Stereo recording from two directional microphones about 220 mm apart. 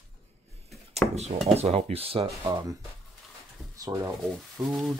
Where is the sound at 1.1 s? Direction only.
30° right (ahead or behind).